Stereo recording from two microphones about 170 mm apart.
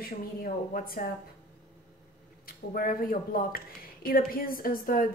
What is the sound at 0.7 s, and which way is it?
Speech, 60° left (ahead or behind).